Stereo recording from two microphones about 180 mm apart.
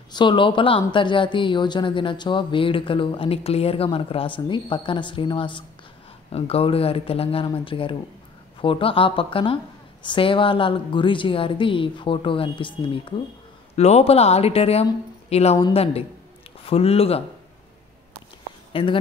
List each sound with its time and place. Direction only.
0.1 s speech: 25° left (ahead or behind)
18.7 s speech: 30° left (ahead or behind)